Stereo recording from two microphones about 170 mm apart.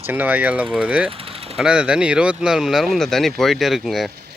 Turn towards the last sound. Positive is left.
turn(degrees=0)  # may be behind; listen again after turning